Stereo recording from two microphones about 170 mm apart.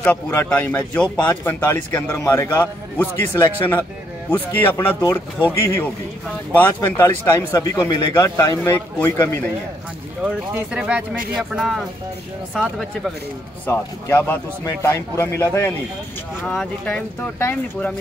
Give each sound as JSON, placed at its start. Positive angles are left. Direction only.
{"t": 0.0, "sound": "speech", "side_deg": 10}
{"t": 6.5, "sound": "speech", "side_deg": 10}
{"t": 10.2, "sound": "speech", "side_deg": -5}
{"t": 13.7, "sound": "speech", "side_deg": 15}